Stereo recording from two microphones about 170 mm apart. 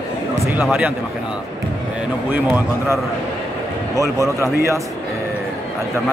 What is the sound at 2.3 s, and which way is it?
A man's voice, 10° right (ahead or behind).